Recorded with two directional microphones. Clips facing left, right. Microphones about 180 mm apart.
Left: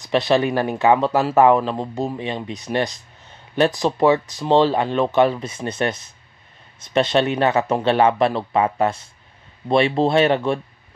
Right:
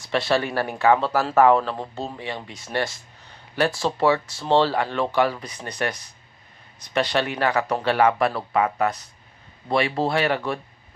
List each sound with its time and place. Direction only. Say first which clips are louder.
0.0 s speech: left 5 dB; 20° left (ahead or behind)